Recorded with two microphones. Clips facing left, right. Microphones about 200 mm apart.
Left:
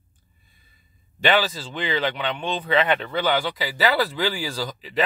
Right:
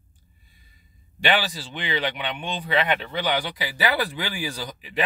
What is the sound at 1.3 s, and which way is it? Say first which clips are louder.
Speech: left 3 dB; 15° right (ahead or behind).